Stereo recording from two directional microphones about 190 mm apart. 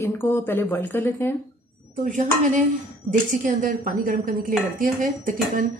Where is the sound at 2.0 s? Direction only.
45° right (ahead or behind).